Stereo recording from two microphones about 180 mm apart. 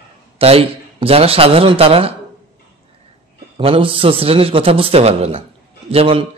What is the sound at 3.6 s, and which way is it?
A man's voice, 30° right (ahead or behind).